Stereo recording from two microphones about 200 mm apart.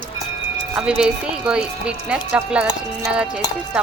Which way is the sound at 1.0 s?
5° right (ahead or behind).